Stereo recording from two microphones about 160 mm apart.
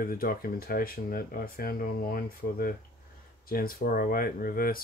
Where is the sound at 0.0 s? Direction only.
65° left (ahead or behind).